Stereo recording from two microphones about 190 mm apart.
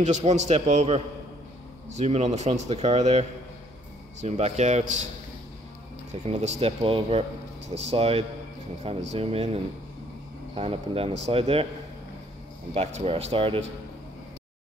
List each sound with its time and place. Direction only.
0.0 s speech: 40° right (ahead or behind)
6.2 s speech: 35° right (ahead or behind)
12.7 s speech: 35° right (ahead or behind)